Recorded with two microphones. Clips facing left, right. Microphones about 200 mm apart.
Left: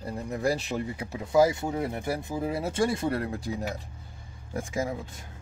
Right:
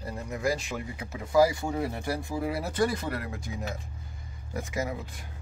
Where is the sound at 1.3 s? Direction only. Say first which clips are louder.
Left 1 dB; 20° left (ahead or behind).